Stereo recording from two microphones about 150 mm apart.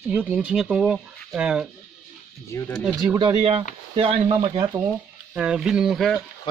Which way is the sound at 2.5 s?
20° left (ahead or behind).